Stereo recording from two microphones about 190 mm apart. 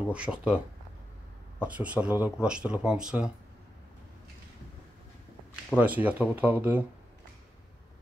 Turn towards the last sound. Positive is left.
turn(degrees=-10)  # may be behind; listen again after turning